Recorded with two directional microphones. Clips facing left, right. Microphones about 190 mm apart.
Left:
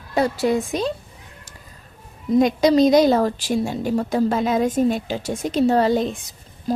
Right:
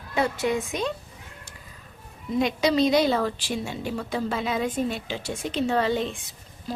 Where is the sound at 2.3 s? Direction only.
45° left (ahead or behind).